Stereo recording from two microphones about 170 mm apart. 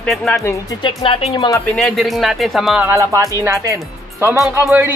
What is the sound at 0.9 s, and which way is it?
Speech, 30° left (ahead or behind).